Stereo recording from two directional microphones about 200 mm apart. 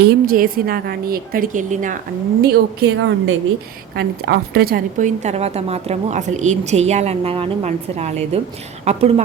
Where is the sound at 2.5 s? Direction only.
65° right (ahead or behind).